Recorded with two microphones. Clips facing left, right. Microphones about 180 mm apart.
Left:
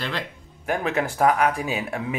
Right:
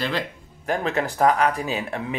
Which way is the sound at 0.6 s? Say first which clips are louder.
Even; 5° left (ahead or behind).